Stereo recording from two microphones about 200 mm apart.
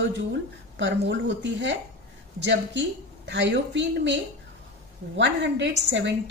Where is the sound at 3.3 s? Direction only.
60° right (ahead or behind).